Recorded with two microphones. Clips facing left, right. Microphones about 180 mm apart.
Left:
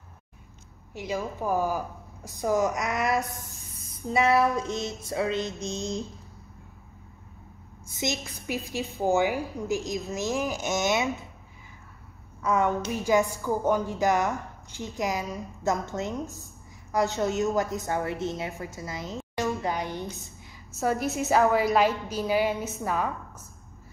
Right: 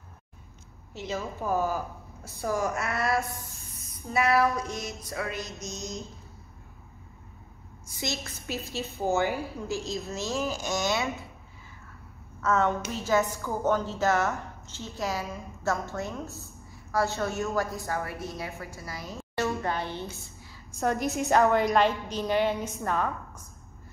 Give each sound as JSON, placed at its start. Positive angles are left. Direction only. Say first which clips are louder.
{"t": 0.9, "sound": "a woman's voice", "louder": "left 2 dB", "side_deg": 15}
{"t": 8.0, "sound": "a woman's voice", "louder": "left 3 dB", "side_deg": 15}
{"t": 12.4, "sound": "a woman's voice", "louder": "left 1 dB", "side_deg": 10}
{"t": 20.7, "sound": "a woman's voice", "louder": "left 1 dB", "side_deg": 5}